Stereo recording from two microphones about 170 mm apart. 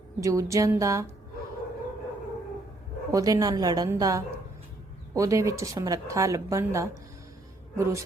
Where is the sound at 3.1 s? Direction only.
20° right (ahead or behind).